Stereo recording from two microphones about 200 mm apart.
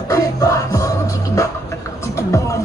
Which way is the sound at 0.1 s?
15° left (ahead or behind).